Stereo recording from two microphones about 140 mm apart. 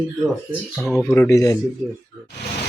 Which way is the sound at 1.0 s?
15° left (ahead or behind).